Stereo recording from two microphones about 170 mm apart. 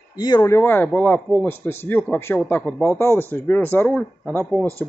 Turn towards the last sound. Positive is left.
turn(degrees=5)  # may be behind; listen again after turning